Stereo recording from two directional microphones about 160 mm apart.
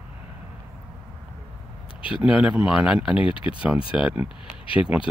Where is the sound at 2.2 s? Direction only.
5° right (ahead or behind).